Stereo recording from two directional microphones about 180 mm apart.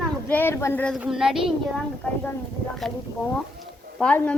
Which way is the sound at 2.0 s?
10° left (ahead or behind).